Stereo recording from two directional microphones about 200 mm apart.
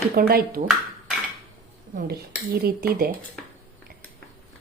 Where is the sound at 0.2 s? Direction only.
50° right (ahead or behind).